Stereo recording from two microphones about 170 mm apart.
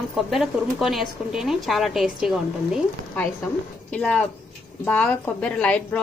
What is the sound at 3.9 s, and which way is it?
A woman's voice, 5° left (ahead or behind).